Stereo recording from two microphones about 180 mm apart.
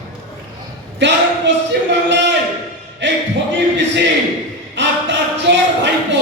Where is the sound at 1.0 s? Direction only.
80° right.